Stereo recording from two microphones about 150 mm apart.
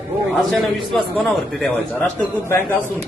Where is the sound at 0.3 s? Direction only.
Centre (ahead or behind).